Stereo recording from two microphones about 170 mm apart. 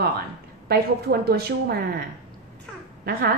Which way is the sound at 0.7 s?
65° right (ahead or behind).